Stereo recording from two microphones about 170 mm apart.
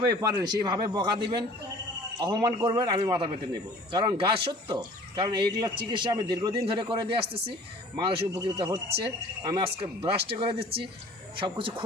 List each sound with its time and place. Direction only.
0.0 s a man's voice: 25° right (ahead or behind)